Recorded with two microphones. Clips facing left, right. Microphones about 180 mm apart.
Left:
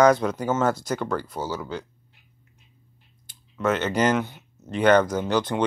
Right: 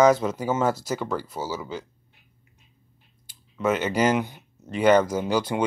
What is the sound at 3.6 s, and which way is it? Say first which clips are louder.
Speech: even; 10° right (ahead or behind).